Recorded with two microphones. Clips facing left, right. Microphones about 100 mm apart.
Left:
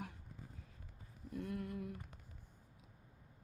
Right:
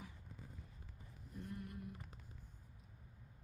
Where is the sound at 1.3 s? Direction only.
90° left.